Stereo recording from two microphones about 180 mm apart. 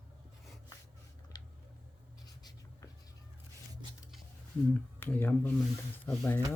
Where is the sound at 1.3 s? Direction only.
20° left (ahead or behind).